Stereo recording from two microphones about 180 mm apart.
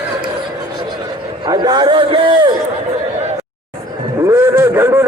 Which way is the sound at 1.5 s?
25° right (ahead or behind).